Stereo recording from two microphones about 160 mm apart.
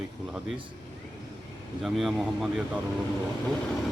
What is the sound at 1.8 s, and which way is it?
Speech, centre (ahead or behind).